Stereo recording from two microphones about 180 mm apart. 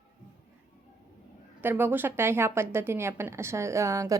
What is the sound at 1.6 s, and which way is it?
A woman's voice, 10° right (ahead or behind).